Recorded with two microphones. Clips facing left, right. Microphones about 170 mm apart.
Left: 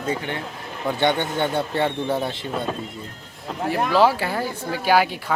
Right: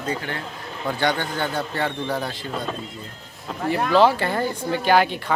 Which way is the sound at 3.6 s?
5° left (ahead or behind).